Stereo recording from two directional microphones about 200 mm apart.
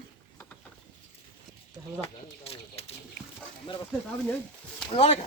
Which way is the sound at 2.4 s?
30° left (ahead or behind).